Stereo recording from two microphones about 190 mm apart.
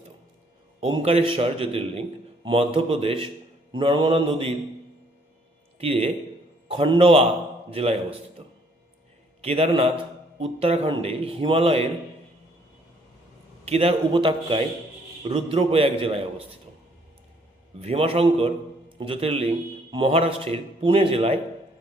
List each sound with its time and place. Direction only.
0.8 s a man's voice: 30° right (ahead or behind)
5.8 s a man's voice: 30° right (ahead or behind)
9.4 s a man's voice: 30° right (ahead or behind)
13.7 s a man's voice: 30° right (ahead or behind)
17.7 s a man's voice: 30° right (ahead or behind)